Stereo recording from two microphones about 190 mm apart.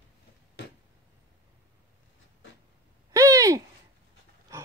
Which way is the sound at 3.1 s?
15° right (ahead or behind).